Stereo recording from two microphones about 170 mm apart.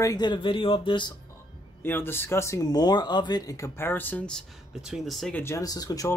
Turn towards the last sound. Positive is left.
turn(degrees=20)  # may be behind; listen again after turning